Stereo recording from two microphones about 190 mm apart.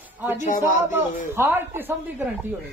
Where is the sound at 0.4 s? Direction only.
40° left (ahead or behind).